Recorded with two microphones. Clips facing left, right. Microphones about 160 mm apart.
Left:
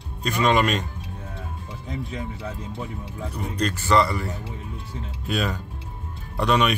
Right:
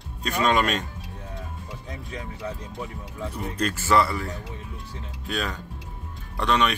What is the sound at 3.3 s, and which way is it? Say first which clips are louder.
A man's voice: left 2 dB; 5° right (ahead or behind).